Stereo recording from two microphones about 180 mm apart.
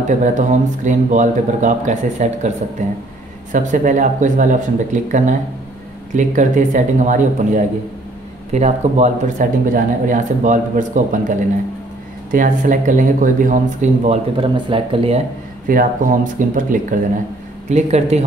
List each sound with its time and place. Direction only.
0.0 s a man's voice: 45° right (ahead or behind)
15.7 s a man's voice: 50° right (ahead or behind)